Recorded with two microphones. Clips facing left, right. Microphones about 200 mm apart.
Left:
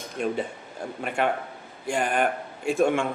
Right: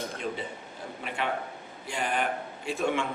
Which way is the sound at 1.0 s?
50° left (ahead or behind).